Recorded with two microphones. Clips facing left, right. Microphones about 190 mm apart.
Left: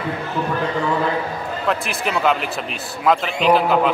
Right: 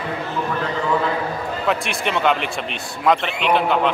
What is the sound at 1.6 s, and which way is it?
Speech, centre (ahead or behind).